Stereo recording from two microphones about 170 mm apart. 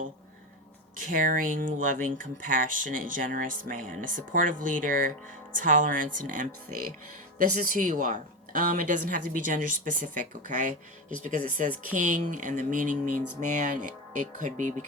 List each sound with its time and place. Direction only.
0.9 s speech: 55° right (ahead or behind)
7.5 s speech: 50° right (ahead or behind)